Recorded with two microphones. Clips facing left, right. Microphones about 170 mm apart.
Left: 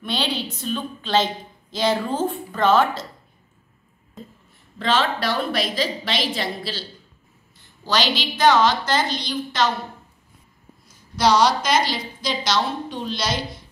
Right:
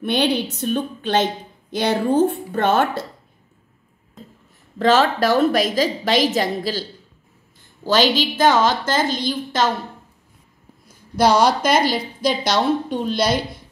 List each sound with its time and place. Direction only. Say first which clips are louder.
0.0 s a woman's voice: right 7 dB; 60° right (ahead or behind)
4.7 s a woman's voice: right 6 dB; 45° right (ahead or behind)
10.9 s a woman's voice: right 3 dB; 55° right (ahead or behind)